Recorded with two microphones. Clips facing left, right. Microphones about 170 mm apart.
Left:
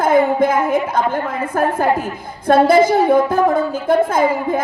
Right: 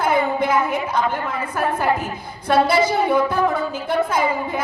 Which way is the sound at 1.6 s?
50° left (ahead or behind).